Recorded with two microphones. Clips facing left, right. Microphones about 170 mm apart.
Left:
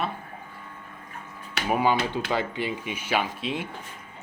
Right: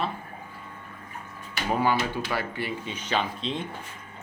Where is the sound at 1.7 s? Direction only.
15° left (ahead or behind).